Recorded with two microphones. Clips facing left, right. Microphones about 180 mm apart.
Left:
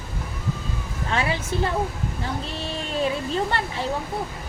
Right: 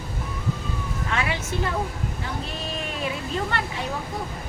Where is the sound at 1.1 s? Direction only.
30° left (ahead or behind).